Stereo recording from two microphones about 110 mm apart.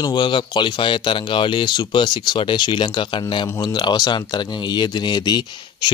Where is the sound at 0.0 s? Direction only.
40° left (ahead or behind).